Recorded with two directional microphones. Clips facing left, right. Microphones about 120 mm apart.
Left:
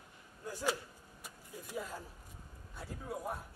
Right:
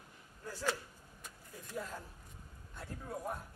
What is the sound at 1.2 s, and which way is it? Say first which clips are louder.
Vehicle: left 3 dB; 5° left (ahead or behind).